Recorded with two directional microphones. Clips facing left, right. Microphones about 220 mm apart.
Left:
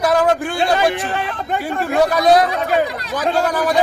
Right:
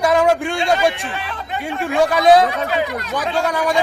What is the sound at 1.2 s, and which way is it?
Speech, 45° left (ahead or behind).